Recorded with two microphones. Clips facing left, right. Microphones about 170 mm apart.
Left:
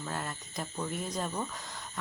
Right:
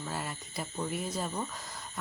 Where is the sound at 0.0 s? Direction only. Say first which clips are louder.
Even; 5° right (ahead or behind).